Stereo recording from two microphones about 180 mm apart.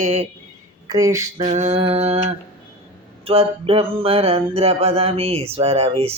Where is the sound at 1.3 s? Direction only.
35° right (ahead or behind).